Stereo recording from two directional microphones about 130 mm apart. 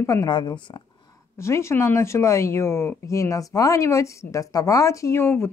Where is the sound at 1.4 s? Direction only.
20° left (ahead or behind).